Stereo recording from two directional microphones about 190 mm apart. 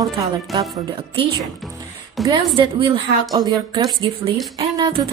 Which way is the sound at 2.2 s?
Centre (ahead or behind).